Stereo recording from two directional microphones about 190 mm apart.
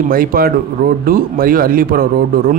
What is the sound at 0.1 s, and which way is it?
Speech, 50° right (ahead or behind).